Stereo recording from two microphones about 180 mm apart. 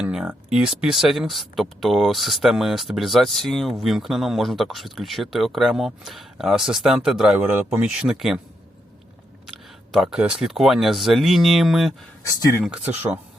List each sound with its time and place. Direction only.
0.0 s speech: 5° right (ahead or behind)
9.5 s speech: centre (ahead or behind)
12.2 s speech: 15° left (ahead or behind)
12.6 s speech: 5° right (ahead or behind)